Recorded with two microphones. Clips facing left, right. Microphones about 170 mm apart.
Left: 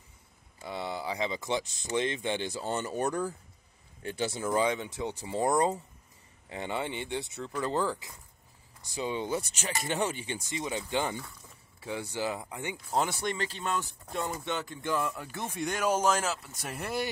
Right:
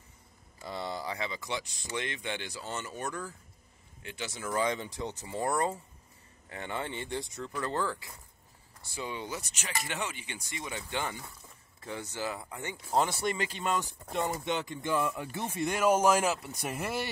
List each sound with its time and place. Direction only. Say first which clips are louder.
0.6 s a sound: left 1 dB; 5° left (ahead or behind)
1.1 s speech: left 5 dB; 25° left (ahead or behind)
2.6 s speech: left 8 dB; 40° left (ahead or behind)
4.7 s speech: left 2 dB; 5° left (ahead or behind)
7.5 s speech: left 3 dB; 15° left (ahead or behind)
11.8 s speech: left 3 dB; 10° left (ahead or behind)
12.9 s speech: right 2 dB; centre (ahead or behind)